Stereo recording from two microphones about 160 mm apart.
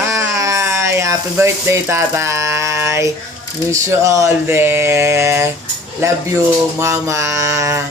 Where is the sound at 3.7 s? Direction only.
20° right (ahead or behind).